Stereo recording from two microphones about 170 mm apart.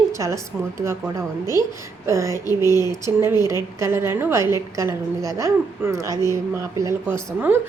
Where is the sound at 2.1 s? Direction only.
15° right (ahead or behind).